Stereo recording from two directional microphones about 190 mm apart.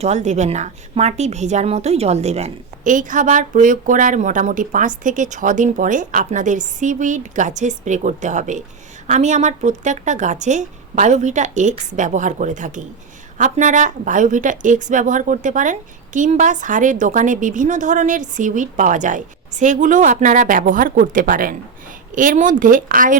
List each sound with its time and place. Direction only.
0.0 s a woman's voice: 40° right (ahead or behind)